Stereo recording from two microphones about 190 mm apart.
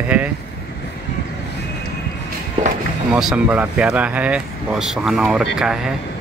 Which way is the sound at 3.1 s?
5° right (ahead or behind).